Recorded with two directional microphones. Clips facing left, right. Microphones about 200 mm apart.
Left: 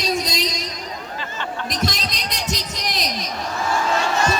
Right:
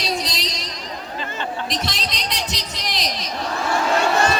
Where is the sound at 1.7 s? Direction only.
45° left (ahead or behind).